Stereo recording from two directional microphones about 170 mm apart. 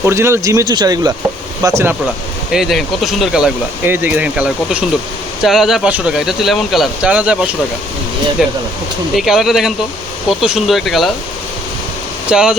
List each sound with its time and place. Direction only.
0.0 s speech: 15° right (ahead or behind)
2.5 s speech: centre (ahead or behind)
12.3 s speech: 5° right (ahead or behind)